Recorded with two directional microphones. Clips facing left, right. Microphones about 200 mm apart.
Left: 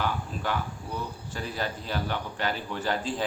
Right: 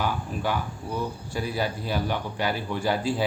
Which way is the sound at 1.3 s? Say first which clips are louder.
Right 4 dB; 10° right (ahead or behind).